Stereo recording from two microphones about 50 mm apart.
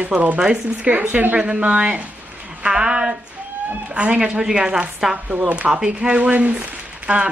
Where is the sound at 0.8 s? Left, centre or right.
Right.